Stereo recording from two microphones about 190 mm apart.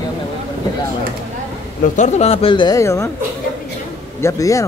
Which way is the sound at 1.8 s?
40° left (ahead or behind).